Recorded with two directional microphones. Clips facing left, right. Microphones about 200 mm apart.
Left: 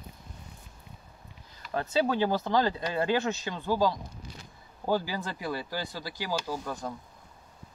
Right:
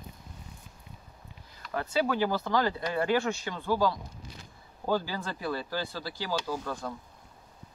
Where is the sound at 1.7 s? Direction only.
25° left (ahead or behind).